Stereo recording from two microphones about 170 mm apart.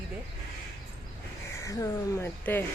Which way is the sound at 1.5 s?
20° left (ahead or behind).